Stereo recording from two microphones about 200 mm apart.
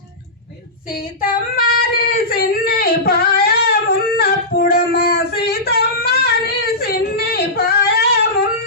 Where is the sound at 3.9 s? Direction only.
50° left (ahead or behind).